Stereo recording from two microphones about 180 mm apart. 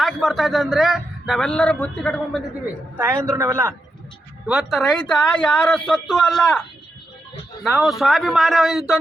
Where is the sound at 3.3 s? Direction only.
15° right (ahead or behind).